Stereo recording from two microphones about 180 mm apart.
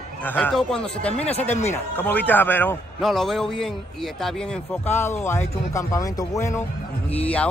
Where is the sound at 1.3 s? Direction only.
40° left (ahead or behind).